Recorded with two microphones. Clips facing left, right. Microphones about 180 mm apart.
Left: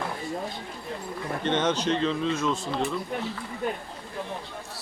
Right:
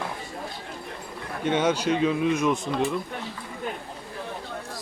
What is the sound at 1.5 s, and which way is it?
Speech, 10° right (ahead or behind).